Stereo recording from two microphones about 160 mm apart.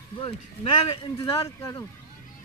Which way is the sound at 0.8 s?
35° left (ahead or behind).